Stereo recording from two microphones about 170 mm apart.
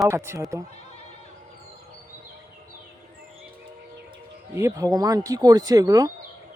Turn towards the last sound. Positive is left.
turn(degrees=-25)  # may be behind; listen again after turning